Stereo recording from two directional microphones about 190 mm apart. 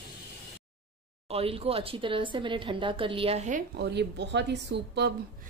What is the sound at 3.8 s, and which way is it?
Speech, 65° right (ahead or behind).